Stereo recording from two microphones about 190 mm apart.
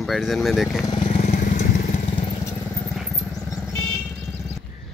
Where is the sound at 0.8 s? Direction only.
30° left (ahead or behind).